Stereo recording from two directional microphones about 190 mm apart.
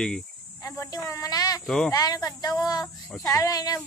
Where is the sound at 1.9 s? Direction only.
20° left (ahead or behind).